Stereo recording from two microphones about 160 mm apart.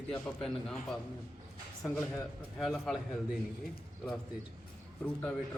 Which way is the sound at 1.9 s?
15° left (ahead or behind).